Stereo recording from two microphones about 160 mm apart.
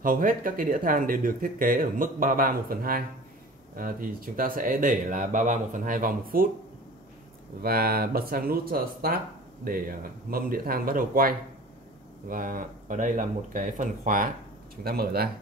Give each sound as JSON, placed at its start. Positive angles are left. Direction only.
{"t": 0.0, "sound": "speech", "side_deg": -60}
{"t": 7.6, "sound": "speech", "side_deg": -70}
{"t": 14.8, "sound": "speech", "side_deg": -70}